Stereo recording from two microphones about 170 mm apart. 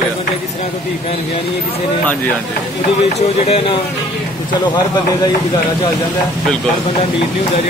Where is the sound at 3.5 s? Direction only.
35° left (ahead or behind).